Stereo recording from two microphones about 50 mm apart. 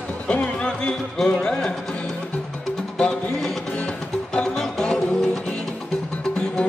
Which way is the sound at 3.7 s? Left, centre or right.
Left.